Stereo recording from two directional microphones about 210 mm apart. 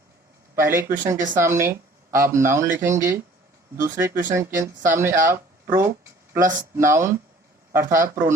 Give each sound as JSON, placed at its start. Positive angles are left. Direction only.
{"t": 0.5, "sound": "speech", "side_deg": -10}
{"t": 4.1, "sound": "speech", "side_deg": -40}
{"t": 4.4, "sound": "speech", "side_deg": -15}